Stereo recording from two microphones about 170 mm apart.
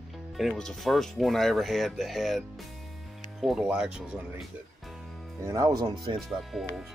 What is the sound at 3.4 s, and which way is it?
Speech, 5° right (ahead or behind).